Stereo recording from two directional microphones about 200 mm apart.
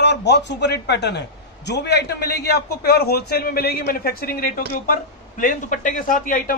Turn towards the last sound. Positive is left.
turn(degrees=45)  # may be behind; listen again after turning